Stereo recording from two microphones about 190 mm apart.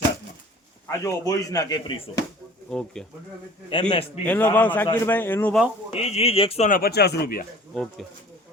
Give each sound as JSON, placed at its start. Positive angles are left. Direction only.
{"t": 0.9, "sound": "speech", "side_deg": 15}
{"t": 2.6, "sound": "speech", "side_deg": 5}
{"t": 3.7, "sound": "a man's voice", "side_deg": 30}
{"t": 4.3, "sound": "speech", "side_deg": 10}
{"t": 5.9, "sound": "speech", "side_deg": 35}
{"t": 6.7, "sound": "speech", "side_deg": 50}
{"t": 7.7, "sound": "speech", "side_deg": 5}